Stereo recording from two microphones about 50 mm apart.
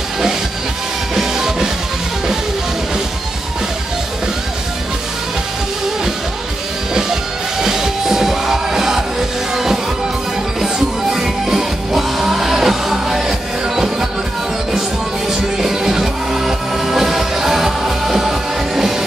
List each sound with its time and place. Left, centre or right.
1.1 s music: centre
6.9 s music: centre
10.6 s music: centre
15.6 s music: centre